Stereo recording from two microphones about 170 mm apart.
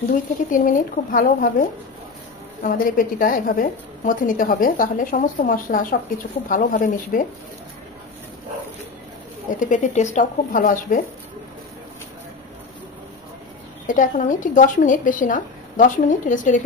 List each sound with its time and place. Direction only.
0.5 s a woman's voice: 50° left (ahead or behind)
9.5 s a woman's voice: 50° left (ahead or behind)
13.8 s a woman's voice: 50° left (ahead or behind)